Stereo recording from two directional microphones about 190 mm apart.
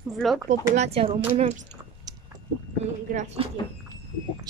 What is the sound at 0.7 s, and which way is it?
Speech, 35° right (ahead or behind).